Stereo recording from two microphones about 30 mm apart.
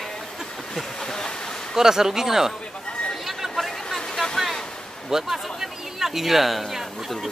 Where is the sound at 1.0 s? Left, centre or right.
Left.